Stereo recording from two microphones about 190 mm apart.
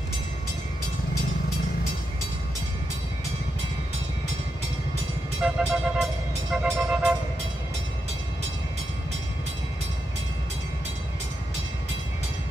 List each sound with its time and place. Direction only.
5.4 s music: 5° right (ahead or behind)